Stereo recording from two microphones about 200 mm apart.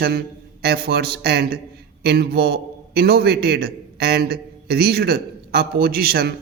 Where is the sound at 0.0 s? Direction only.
50° right (ahead or behind).